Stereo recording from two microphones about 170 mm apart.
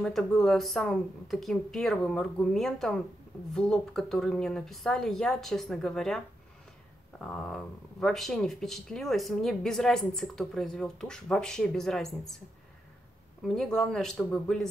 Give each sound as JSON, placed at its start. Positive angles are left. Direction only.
{"t": 0.0, "sound": "speech", "side_deg": 0}
{"t": 13.4, "sound": "speech", "side_deg": 0}